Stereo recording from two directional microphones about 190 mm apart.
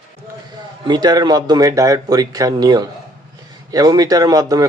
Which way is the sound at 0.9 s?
20° right (ahead or behind).